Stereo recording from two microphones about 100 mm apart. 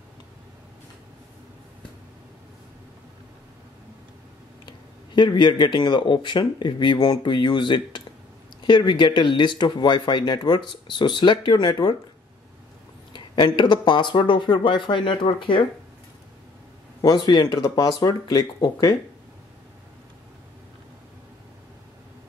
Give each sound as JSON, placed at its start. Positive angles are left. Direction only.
{"t": 4.6, "sound": "speech", "side_deg": 50}
{"t": 13.1, "sound": "speech", "side_deg": 55}
{"t": 17.0, "sound": "speech", "side_deg": 45}
{"t": 17.5, "sound": "speech", "side_deg": 35}